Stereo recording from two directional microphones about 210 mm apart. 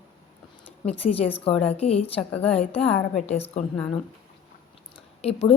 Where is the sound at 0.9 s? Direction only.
30° left (ahead or behind).